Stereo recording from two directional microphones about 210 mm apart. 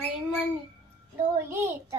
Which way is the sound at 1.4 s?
10° right (ahead or behind).